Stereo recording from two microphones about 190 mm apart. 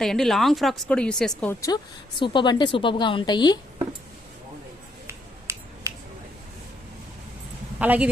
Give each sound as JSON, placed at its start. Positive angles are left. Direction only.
{"t": 0.0, "sound": "speech", "side_deg": 0}
{"t": 5.0, "sound": "finger snapping", "side_deg": -15}
{"t": 7.8, "sound": "speech", "side_deg": -10}